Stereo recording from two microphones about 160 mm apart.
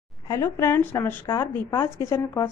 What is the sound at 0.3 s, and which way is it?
A woman's voice, 15° left (ahead or behind).